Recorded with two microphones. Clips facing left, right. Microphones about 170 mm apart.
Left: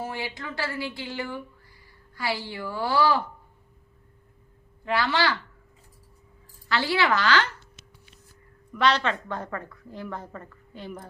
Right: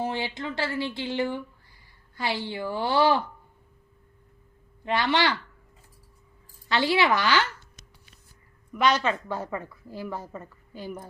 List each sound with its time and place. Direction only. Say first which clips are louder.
0.0 s speech: right 4 dB; 25° right (ahead or behind)
4.9 s speech: right 1 dB; 20° right (ahead or behind)
6.7 s a woman's voice: right 1 dB; 20° right (ahead or behind)
8.7 s a woman's voice: even; 10° right (ahead or behind)